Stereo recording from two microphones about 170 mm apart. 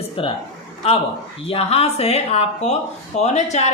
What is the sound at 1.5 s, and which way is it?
Speech, 35° left (ahead or behind).